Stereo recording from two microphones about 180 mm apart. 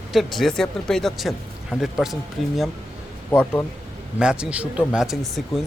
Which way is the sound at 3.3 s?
15° left (ahead or behind).